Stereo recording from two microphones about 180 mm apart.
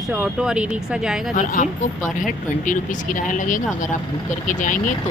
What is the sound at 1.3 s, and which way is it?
Speech, 50° left (ahead or behind).